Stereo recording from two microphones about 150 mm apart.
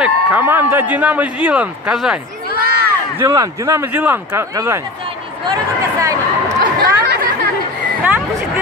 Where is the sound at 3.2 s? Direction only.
20° right (ahead or behind).